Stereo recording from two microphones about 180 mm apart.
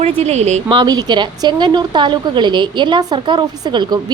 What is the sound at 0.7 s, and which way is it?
Speech, 25° right (ahead or behind).